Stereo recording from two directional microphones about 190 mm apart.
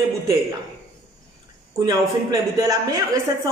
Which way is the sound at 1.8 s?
20° right (ahead or behind).